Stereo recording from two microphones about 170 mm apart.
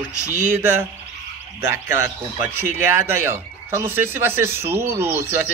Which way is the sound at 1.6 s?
15° right (ahead or behind).